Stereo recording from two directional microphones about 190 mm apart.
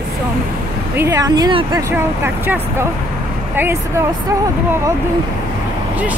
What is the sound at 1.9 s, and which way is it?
Speech, 10° right (ahead or behind).